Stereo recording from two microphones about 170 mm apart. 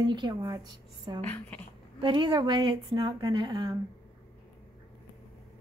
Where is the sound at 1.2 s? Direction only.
10° left (ahead or behind).